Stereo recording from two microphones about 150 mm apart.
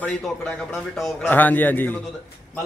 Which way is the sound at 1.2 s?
10° left (ahead or behind).